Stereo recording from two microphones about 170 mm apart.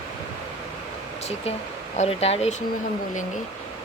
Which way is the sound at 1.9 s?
40° left (ahead or behind).